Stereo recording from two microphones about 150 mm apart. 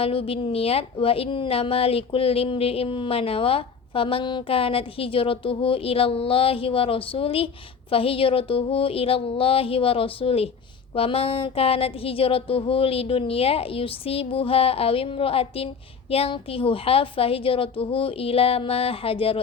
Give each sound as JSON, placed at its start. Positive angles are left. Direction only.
{"t": 0.0, "sound": "a woman's voice", "side_deg": 40}